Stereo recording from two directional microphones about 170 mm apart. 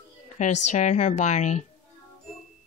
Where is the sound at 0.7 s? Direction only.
45° left (ahead or behind).